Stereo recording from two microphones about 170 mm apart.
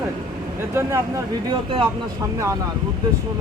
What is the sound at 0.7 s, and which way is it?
Speech, 15° right (ahead or behind).